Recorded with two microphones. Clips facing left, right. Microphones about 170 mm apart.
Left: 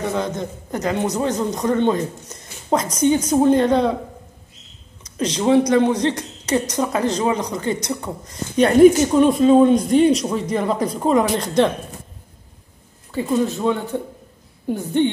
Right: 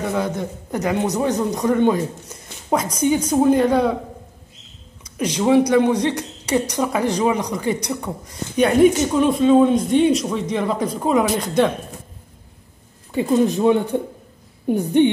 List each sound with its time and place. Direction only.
0.1 s a man's voice: 10° right (ahead or behind)
5.1 s a man's voice: 10° right (ahead or behind)
8.5 s speech: centre (ahead or behind)
13.1 s a man's voice: 15° right (ahead or behind)